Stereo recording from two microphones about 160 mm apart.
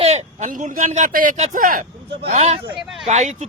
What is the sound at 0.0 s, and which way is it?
Speech, 45° right (ahead or behind).